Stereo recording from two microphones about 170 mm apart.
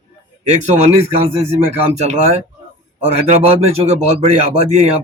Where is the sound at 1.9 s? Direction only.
40° right (ahead or behind).